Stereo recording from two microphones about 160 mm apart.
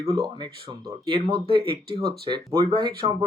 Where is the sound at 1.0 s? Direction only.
35° right (ahead or behind).